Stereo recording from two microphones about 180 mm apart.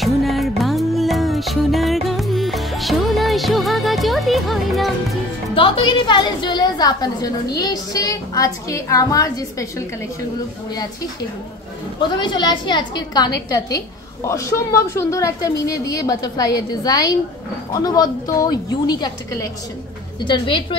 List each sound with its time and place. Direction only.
0.0 s music: centre (ahead or behind)
5.5 s a sound: 25° left (ahead or behind)
7.5 s a woman's voice: 20° left (ahead or behind)
12.2 s a woman's voice: 25° left (ahead or behind)